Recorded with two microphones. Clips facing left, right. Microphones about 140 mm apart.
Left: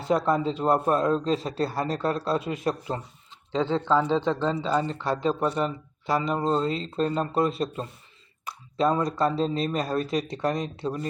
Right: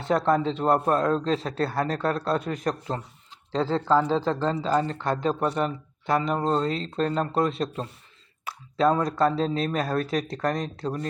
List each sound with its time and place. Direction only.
0.0 s speech: centre (ahead or behind)
3.9 s speech: 40° right (ahead or behind)
4.3 s speech: centre (ahead or behind)
4.6 s speech: 40° right (ahead or behind)
6.2 s speech: centre (ahead or behind)